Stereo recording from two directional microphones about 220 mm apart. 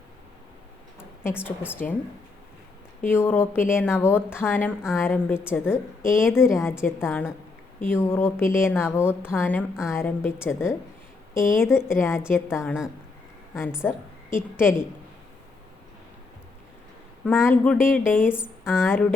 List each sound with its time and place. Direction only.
1.2 s a woman's voice: 10° left (ahead or behind)
3.1 s a woman's voice: 10° left (ahead or behind)
13.8 s a woman's voice: 10° left (ahead or behind)
17.2 s a woman's voice: 5° left (ahead or behind)